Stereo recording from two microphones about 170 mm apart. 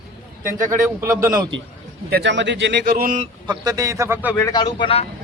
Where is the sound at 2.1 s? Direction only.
80° right; by 3.3 s 50° right (ahead or behind).